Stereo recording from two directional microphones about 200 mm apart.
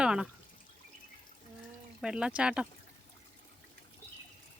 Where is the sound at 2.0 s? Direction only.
5° right (ahead or behind).